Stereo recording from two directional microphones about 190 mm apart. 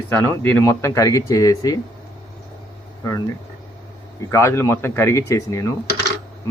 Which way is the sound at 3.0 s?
15° left (ahead or behind).